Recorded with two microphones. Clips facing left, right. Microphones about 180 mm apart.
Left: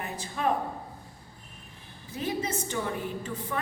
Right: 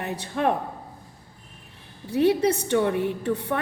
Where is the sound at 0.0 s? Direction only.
65° right (ahead or behind).